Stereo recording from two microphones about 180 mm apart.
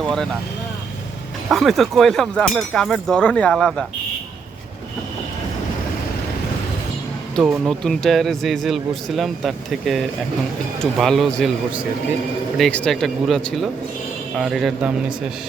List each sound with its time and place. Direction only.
1.5 s speech: centre (ahead or behind)
7.3 s speech: centre (ahead or behind)
12.5 s speech: 5° left (ahead or behind)